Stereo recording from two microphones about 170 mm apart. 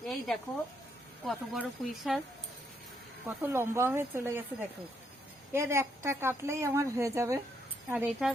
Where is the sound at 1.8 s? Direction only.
Centre (ahead or behind).